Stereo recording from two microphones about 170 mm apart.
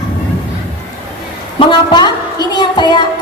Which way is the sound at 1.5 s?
25° left (ahead or behind).